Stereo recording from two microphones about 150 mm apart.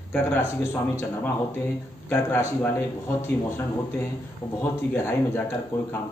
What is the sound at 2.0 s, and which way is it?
Speech, 15° left (ahead or behind).